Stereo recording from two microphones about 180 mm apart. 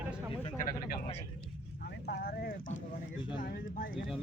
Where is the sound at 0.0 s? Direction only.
10° right (ahead or behind).